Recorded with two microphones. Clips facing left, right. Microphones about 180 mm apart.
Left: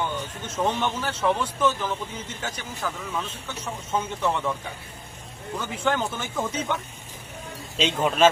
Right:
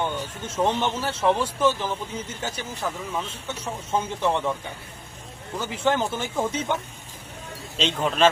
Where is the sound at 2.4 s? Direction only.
25° right (ahead or behind).